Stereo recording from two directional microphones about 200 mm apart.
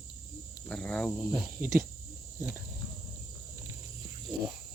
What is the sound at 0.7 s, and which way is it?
Speech, 5° left (ahead or behind).